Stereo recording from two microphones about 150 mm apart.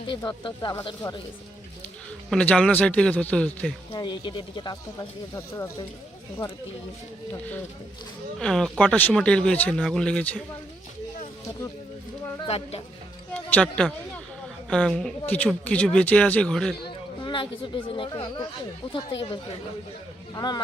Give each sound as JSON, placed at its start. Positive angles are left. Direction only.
{"t": 0.1, "sound": "speech", "side_deg": 30}
{"t": 2.3, "sound": "speech", "side_deg": 5}
{"t": 3.9, "sound": "speech", "side_deg": 30}
{"t": 5.3, "sound": "speech", "side_deg": 20}
{"t": 8.4, "sound": "speech", "side_deg": 0}
{"t": 12.5, "sound": "speech", "side_deg": 40}
{"t": 13.3, "sound": "speech", "side_deg": 10}
{"t": 17.2, "sound": "speech", "side_deg": 35}